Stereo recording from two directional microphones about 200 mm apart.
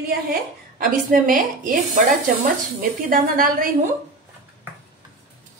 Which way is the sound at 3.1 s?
45° right (ahead or behind).